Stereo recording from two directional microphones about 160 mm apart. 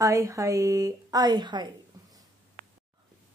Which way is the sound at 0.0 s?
20° right (ahead or behind).